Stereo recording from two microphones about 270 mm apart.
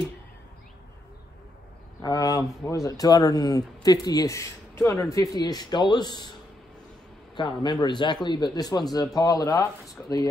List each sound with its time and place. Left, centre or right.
2.0 s speech: centre
7.3 s speech: centre